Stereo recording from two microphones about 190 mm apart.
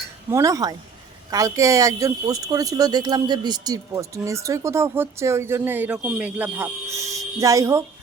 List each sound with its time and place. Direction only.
0.3 s speech: 15° right (ahead or behind)